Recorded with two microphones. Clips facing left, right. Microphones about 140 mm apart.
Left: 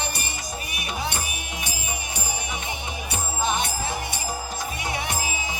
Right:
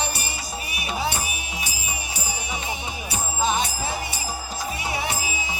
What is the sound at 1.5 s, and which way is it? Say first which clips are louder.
Music: even; 55° left (ahead or behind).